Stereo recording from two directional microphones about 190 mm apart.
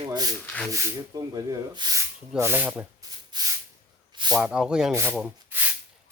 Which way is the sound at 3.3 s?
20° right (ahead or behind).